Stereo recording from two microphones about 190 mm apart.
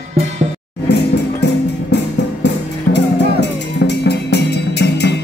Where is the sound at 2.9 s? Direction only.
65° left (ahead or behind).